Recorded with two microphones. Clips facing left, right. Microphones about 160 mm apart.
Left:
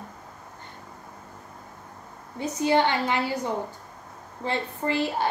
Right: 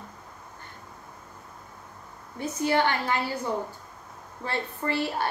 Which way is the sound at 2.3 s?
20° left (ahead or behind).